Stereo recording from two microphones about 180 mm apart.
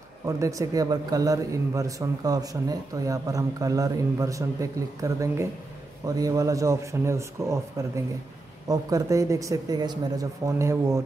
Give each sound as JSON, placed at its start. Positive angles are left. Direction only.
{"t": 0.4, "sound": "speech", "side_deg": -20}